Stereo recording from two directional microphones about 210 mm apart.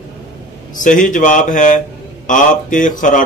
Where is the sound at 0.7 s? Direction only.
40° left (ahead or behind).